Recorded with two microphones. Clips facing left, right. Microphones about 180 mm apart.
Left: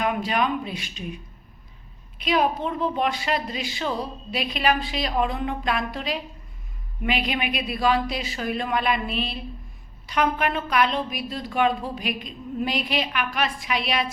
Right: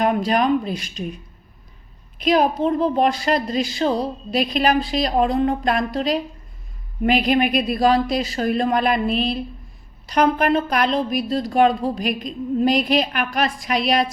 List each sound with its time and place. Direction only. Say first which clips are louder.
0.0 s a woman's voice: right 5 dB; 40° right (ahead or behind)
2.1 s a woman's voice: right 5 dB; 40° right (ahead or behind)